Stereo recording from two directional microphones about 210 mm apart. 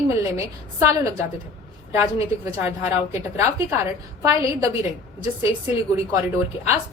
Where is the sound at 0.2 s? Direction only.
15° right (ahead or behind).